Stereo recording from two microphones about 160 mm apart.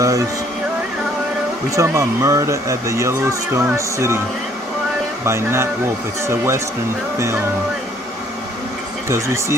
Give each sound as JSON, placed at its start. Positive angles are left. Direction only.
{"t": 0.0, "sound": "a sound", "side_deg": -20}
{"t": 1.8, "sound": "speech", "side_deg": -20}
{"t": 5.2, "sound": "speech", "side_deg": -15}
{"t": 9.1, "sound": "speech", "side_deg": -15}